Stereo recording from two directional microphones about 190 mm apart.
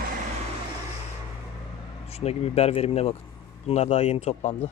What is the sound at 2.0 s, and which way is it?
Speech, 35° left (ahead or behind).